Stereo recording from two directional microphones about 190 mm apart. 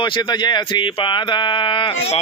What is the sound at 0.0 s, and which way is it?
Speech, 25° left (ahead or behind).